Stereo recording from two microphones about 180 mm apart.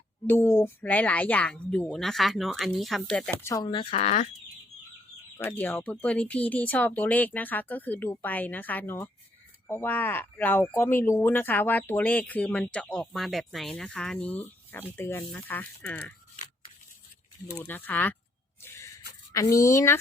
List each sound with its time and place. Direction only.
0.3 s speech: 15° left (ahead or behind)
3.4 s speech: 20° left (ahead or behind); by 4.3 s 40° left (ahead or behind)
5.4 s speech: 10° left (ahead or behind)
17.6 s speech: 10° left (ahead or behind)
18.6 s a sound: 15° left (ahead or behind)
19.3 s speech: 15° left (ahead or behind)